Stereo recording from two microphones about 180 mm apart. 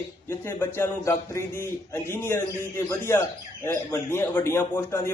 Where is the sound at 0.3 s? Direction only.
15° left (ahead or behind).